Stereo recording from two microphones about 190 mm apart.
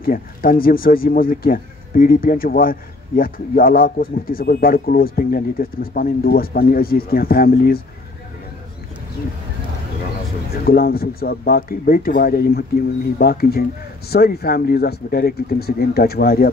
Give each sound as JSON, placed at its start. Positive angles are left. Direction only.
{"t": 0.0, "sound": "speech", "side_deg": 50}
{"t": 10.6, "sound": "speech", "side_deg": 55}